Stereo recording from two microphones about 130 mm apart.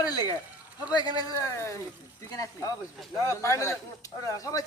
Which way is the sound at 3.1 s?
25° left (ahead or behind).